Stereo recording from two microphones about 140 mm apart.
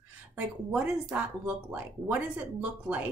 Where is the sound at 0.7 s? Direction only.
10° right (ahead or behind).